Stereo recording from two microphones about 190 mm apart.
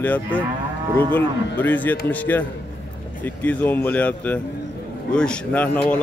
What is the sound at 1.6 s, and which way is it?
Speech, 10° left (ahead or behind).